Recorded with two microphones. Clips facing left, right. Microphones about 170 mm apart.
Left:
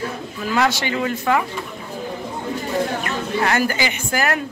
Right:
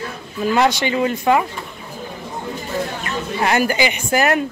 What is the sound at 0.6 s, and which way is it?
Speech, 20° right (ahead or behind).